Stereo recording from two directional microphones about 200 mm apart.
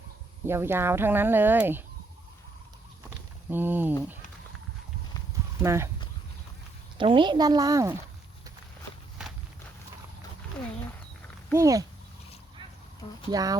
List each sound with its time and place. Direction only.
0.4 s speech: 10° right (ahead or behind)
3.5 s speech: 10° right (ahead or behind)
5.5 s speech: 15° right (ahead or behind)
7.0 s speech: 25° right (ahead or behind)
11.5 s speech: 15° right (ahead or behind)
13.3 s speech: 20° right (ahead or behind)